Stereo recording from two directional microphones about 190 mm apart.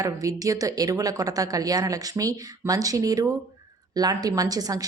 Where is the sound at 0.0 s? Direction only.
15° right (ahead or behind).